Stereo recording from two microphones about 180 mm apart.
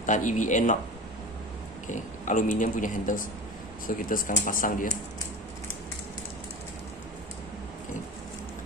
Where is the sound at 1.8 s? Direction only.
45° left (ahead or behind).